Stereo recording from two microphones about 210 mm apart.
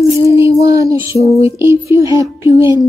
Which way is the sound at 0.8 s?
15° right (ahead or behind).